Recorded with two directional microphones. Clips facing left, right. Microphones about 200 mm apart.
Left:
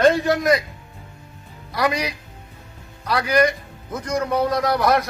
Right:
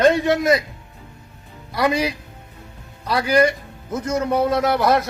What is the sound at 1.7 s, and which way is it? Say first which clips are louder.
A man's voice: right 3 dB; 25° right (ahead or behind).